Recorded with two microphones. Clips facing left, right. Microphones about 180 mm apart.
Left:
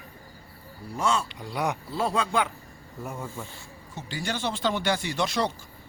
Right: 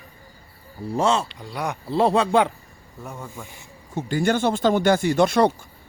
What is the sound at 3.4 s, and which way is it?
Speech, 15° right (ahead or behind).